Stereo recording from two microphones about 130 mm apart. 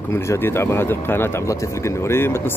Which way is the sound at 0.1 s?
20° left (ahead or behind).